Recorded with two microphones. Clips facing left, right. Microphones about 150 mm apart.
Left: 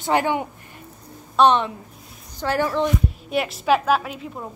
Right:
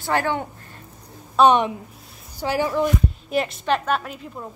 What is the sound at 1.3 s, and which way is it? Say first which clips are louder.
A woman's voice: right 1 dB; 10° right (ahead or behind).